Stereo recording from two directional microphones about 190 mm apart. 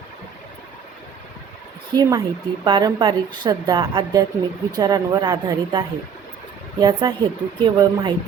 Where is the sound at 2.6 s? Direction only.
25° right (ahead or behind).